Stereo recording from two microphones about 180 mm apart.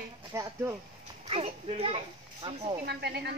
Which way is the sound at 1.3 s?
35° right (ahead or behind).